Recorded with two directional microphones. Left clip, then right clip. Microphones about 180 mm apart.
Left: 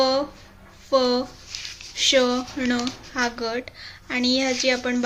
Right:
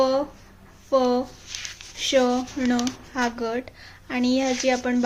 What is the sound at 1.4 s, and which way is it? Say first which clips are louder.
Squish: even; 45° right (ahead or behind).